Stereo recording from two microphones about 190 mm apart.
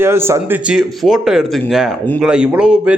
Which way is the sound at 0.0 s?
10° right (ahead or behind).